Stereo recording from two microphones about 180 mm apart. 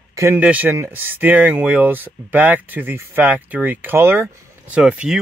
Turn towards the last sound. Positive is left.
turn(degrees=-5)  # may be behind; listen again after turning